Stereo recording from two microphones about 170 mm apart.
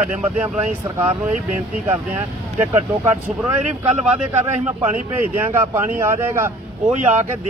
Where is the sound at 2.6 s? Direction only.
40° right (ahead or behind).